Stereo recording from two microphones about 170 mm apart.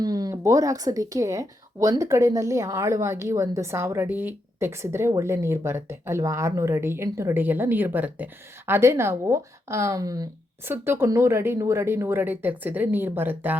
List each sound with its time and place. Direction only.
0.0 s speech: 20° right (ahead or behind)